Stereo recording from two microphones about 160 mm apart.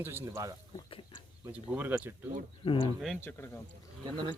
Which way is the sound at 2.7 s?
30° left (ahead or behind).